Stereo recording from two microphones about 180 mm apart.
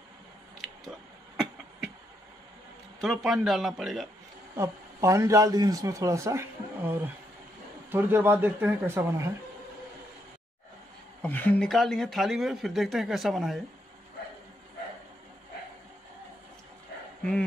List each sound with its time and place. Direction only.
0.6 s a sound: centre (ahead or behind)
3.0 s speech: centre (ahead or behind)
4.6 s a man's voice: 15° right (ahead or behind)
11.2 s speech: 10° left (ahead or behind)
17.2 s speech: 5° left (ahead or behind)